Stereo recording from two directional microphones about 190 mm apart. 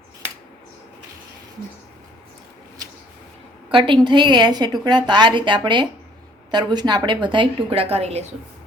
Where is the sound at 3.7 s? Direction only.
25° right (ahead or behind).